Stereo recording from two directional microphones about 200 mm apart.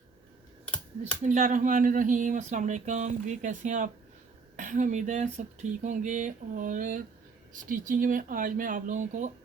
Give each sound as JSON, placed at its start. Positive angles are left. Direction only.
{"t": 1.2, "sound": "speech", "side_deg": -40}